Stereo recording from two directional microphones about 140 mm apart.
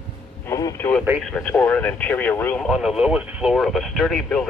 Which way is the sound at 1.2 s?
5° left (ahead or behind).